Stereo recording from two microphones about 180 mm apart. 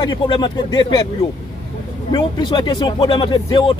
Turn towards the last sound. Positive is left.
turn(degrees=25)  # may be behind; listen again after turning